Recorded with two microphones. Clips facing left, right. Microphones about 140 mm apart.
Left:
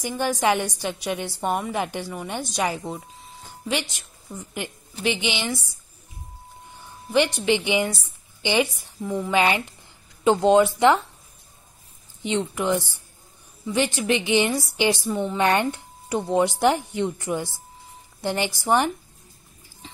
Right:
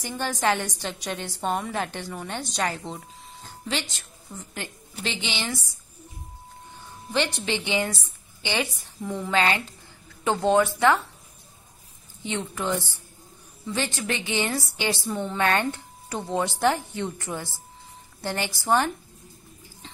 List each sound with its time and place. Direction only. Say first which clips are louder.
0.0 s a woman's voice: left 3 dB; 10° left (ahead or behind)
7.1 s a woman's voice: left 6 dB; 15° left (ahead or behind)
12.2 s a woman's voice: left 5 dB; 20° left (ahead or behind)